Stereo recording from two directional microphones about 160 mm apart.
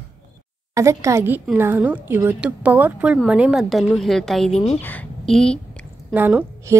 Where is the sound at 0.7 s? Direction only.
20° right (ahead or behind); by 4.5 s centre (ahead or behind).